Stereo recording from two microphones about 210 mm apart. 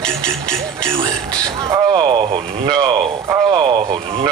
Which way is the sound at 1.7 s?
20° right (ahead or behind).